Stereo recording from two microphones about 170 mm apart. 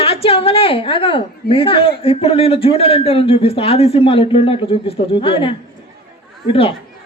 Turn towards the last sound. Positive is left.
turn(degrees=35)  # may be behind; listen again after turning